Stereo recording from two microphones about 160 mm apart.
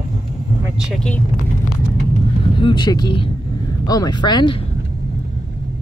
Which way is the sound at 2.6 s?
30° left (ahead or behind).